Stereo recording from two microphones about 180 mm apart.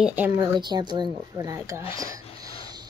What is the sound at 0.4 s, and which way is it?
A woman's voice, 25° right (ahead or behind).